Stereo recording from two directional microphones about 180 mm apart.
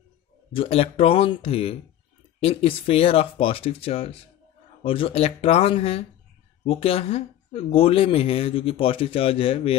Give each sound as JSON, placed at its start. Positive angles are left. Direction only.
{"t": 0.5, "sound": "speech", "side_deg": 30}